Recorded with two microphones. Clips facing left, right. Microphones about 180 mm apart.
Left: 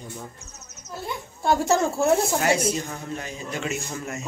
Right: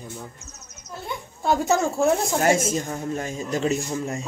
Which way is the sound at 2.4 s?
45° right (ahead or behind).